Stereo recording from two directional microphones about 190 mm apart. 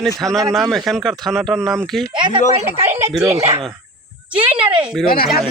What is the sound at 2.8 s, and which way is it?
Speech, 15° right (ahead or behind).